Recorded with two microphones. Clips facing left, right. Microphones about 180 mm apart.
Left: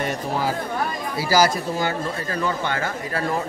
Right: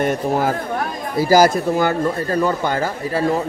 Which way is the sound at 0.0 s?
50° right (ahead or behind).